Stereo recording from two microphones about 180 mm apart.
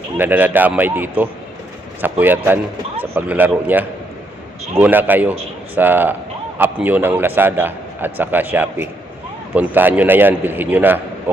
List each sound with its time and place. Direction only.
0.2 s a man's voice: 10° right (ahead or behind)